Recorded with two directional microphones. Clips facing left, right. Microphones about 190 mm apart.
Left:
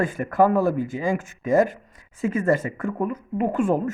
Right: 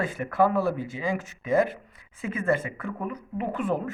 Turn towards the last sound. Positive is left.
turn(degrees=45)  # may be behind; listen again after turning